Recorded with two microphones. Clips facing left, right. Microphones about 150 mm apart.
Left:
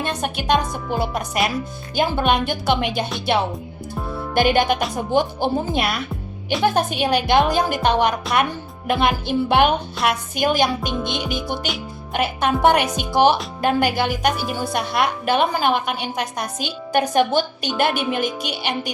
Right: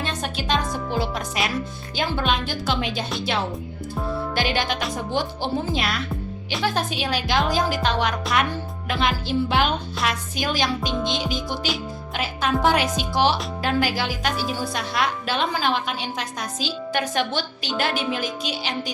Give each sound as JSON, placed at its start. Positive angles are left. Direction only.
{"t": 0.0, "sound": "speech", "side_deg": 60}
{"t": 2.0, "sound": "music", "side_deg": 50}
{"t": 2.5, "sound": "speech", "side_deg": 60}
{"t": 4.4, "sound": "music", "side_deg": 55}
{"t": 5.1, "sound": "speech", "side_deg": 55}